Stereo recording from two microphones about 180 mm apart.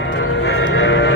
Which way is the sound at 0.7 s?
90° left.